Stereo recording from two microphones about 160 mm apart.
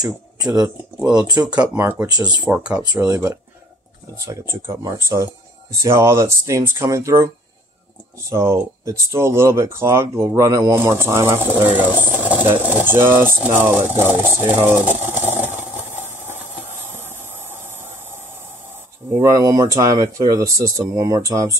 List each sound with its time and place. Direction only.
0.0 s speech: 25° right (ahead or behind)
2.4 s speech: 10° right (ahead or behind)
8.3 s speech: 15° right (ahead or behind)
14.5 s a sound: 10° right (ahead or behind)